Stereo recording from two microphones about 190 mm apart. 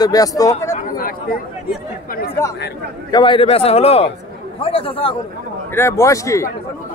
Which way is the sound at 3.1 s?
25° left (ahead or behind).